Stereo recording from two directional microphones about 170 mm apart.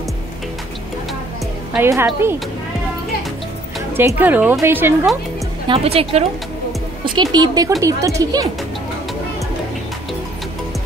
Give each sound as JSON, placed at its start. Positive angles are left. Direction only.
{"t": 1.8, "sound": "a woman's voice", "side_deg": -15}
{"t": 3.9, "sound": "a woman's voice", "side_deg": -15}
{"t": 5.7, "sound": "speech", "side_deg": -35}
{"t": 7.1, "sound": "speech", "side_deg": -25}